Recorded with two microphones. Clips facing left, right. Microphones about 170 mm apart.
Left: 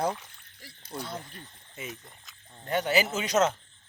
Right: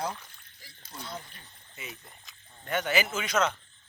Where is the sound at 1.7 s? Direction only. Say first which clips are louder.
Left 4 dB; 45° left (ahead or behind).